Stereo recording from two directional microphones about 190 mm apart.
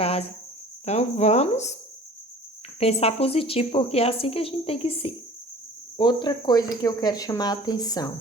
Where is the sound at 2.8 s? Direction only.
30° left (ahead or behind).